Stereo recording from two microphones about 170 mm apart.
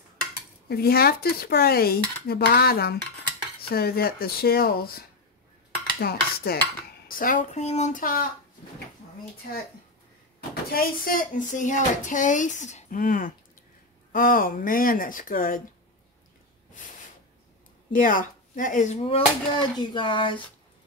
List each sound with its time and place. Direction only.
0.7 s dishes: 65° left (ahead or behind)
7.1 s speech: 55° left (ahead or behind)
10.5 s speech: 60° left (ahead or behind)
14.1 s dishes: 55° left (ahead or behind)
17.9 s speech: 50° left (ahead or behind); by 20.4 s 30° left (ahead or behind)